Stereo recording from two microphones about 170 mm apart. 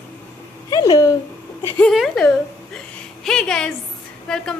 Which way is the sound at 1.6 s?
10° left (ahead or behind).